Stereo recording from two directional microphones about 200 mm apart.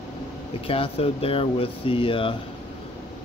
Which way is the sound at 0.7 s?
30° left (ahead or behind).